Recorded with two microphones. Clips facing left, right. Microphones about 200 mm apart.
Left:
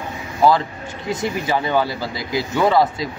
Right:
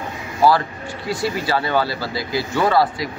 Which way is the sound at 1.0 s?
20° left (ahead or behind).